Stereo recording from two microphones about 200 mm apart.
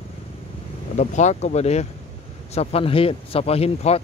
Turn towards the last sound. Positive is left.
turn(degrees=30)  # may be behind; listen again after turning